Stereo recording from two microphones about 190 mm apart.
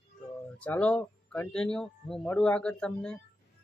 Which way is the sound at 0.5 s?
5° left (ahead or behind).